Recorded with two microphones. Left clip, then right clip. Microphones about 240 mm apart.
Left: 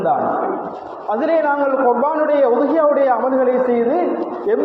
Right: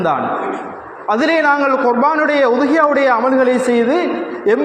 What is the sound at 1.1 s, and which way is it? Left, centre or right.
A man's voice, right.